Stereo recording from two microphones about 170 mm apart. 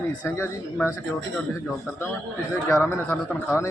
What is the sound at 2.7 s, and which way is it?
Speech, 15° left (ahead or behind).